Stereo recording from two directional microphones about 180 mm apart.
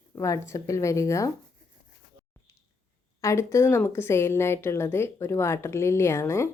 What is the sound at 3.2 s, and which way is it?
A woman's voice, 15° left (ahead or behind).